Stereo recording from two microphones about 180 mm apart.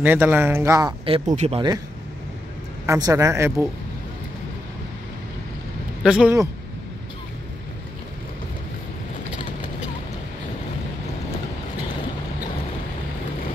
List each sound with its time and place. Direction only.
0.0 s speech: 10° right (ahead or behind)
1.0 s speech: 30° right (ahead or behind)
2.9 s speech: 20° right (ahead or behind)
6.0 s speech: 5° right (ahead or behind)